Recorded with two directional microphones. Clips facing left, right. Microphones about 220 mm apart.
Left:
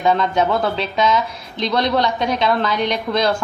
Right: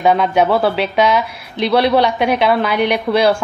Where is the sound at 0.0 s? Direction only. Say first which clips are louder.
Right 3 dB; 10° right (ahead or behind).